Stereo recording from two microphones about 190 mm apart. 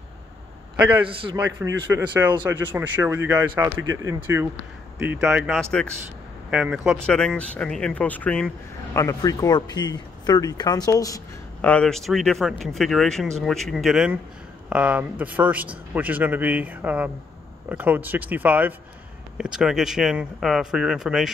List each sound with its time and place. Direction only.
0.7 s a man's voice: 10° right (ahead or behind)
1.0 s a man's voice: 25° right (ahead or behind)
1.6 s speech: 10° right (ahead or behind); by 8.5 s 5° left (ahead or behind)
8.9 s speech: 15° left (ahead or behind)
11.7 s speech: 5° left (ahead or behind)